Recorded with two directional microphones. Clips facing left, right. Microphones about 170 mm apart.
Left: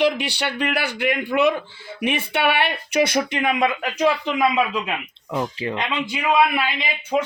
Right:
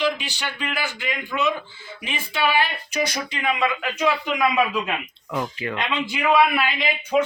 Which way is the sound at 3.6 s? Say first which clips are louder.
Left 3 dB; 40° left (ahead or behind).